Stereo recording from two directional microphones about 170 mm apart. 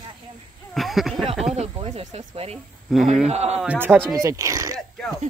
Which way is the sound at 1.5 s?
40° right (ahead or behind).